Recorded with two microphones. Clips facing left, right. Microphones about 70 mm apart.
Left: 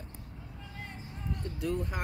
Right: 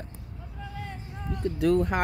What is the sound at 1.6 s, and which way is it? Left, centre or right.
Speech, right.